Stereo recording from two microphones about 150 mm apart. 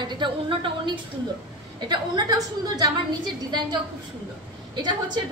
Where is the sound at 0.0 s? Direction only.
30° right (ahead or behind).